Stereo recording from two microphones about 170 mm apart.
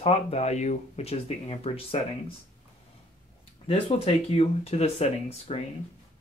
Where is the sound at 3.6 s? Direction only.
35° left (ahead or behind).